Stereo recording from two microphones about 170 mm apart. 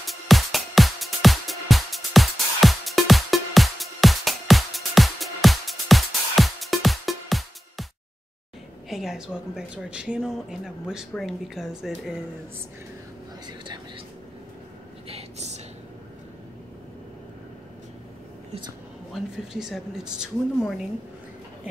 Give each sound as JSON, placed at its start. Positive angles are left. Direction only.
{"t": 0.0, "sound": "music", "side_deg": 0}
{"t": 8.8, "sound": "a woman's voice", "side_deg": 0}
{"t": 13.5, "sound": "whispering", "side_deg": -25}
{"t": 15.0, "sound": "a sound", "side_deg": -40}
{"t": 19.1, "sound": "a woman's voice", "side_deg": 0}